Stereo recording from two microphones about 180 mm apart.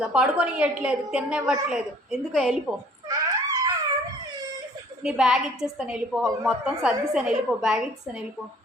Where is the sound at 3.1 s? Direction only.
20° right (ahead or behind).